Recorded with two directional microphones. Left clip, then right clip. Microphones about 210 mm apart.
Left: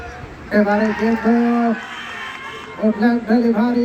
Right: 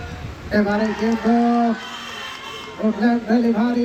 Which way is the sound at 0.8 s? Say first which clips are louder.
Left 3 dB; 15° left (ahead or behind).